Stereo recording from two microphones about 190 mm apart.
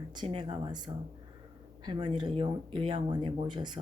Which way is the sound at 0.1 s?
25° right (ahead or behind).